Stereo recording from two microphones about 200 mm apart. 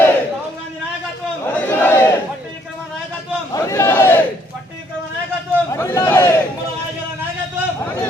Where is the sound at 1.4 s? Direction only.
10° left (ahead or behind).